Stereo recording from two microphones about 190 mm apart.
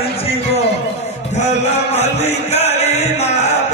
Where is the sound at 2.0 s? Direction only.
35° left (ahead or behind).